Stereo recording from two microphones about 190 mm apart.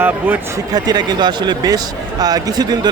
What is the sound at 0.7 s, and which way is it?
Speech, 20° right (ahead or behind).